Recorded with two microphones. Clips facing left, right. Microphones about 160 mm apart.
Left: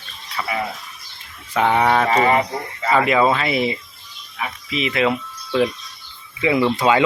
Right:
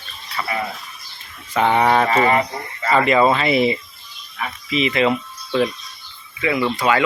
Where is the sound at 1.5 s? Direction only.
5° left (ahead or behind).